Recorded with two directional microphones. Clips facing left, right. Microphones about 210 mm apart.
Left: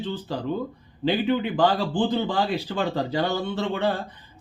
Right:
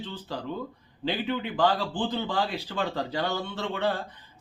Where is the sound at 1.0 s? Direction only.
15° left (ahead or behind).